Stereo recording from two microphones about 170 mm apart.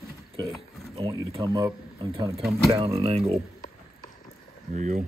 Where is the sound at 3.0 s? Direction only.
35° right (ahead or behind).